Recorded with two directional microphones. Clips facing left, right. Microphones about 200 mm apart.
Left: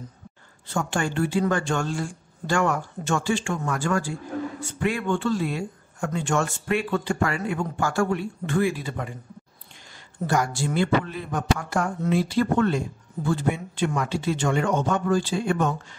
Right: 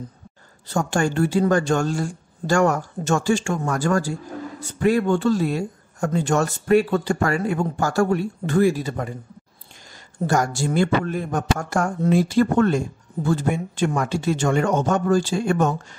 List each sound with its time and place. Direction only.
0.7 s speech: 40° right (ahead or behind)
10.1 s speech: 45° right (ahead or behind)